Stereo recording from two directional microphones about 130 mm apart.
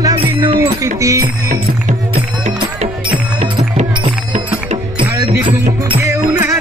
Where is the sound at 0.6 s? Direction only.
25° right (ahead or behind).